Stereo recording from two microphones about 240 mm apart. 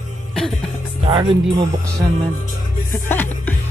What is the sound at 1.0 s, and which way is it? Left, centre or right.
Speech, centre.